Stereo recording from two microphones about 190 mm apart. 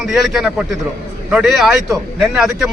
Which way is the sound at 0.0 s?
Centre (ahead or behind).